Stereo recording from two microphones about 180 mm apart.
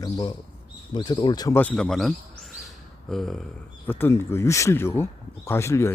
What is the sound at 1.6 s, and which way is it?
Speech, 5° left (ahead or behind).